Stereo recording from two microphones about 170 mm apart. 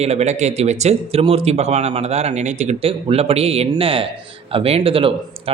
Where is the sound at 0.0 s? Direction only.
40° right (ahead or behind).